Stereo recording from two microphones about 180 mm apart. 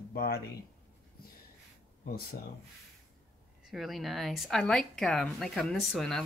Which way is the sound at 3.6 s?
Centre (ahead or behind).